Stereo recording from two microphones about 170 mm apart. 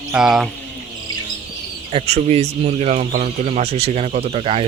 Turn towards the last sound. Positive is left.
turn(degrees=-35)  # may be behind; listen again after turning